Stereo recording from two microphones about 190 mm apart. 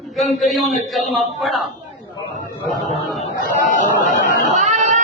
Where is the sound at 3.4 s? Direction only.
45° left (ahead or behind).